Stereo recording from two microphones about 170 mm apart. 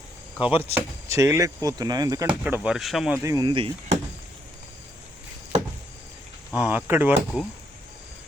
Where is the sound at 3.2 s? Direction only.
25° right (ahead or behind).